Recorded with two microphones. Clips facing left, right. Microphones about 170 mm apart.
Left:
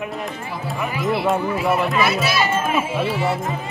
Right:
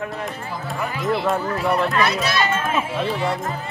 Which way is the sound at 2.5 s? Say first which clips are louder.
Left 2 dB; 20° left (ahead or behind).